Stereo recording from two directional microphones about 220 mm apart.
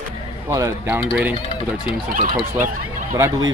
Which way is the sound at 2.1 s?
35° right (ahead or behind).